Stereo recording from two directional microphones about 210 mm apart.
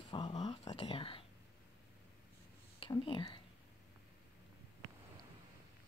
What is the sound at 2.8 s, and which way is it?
Speech, 25° left (ahead or behind).